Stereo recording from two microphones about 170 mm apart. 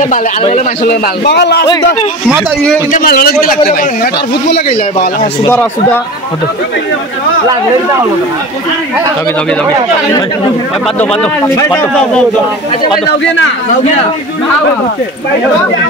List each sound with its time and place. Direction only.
0.4 s a man's voice: 40° left (ahead or behind)
0.8 s a man's voice: 75° left (ahead or behind)
2.9 s speech: 60° left (ahead or behind)
5.5 s speech: 10° left (ahead or behind)
11.0 s speech: 5° left (ahead or behind)